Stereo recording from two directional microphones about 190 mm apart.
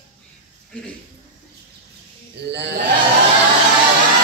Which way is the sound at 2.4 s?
60° right (ahead or behind).